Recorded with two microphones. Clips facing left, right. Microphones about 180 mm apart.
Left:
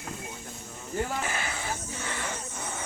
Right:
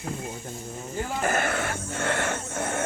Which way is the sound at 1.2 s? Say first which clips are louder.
Right 8 dB; 50° right (ahead or behind).